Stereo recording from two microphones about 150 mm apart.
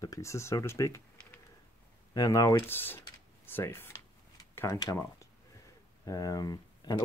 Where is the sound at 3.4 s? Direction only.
15° left (ahead or behind).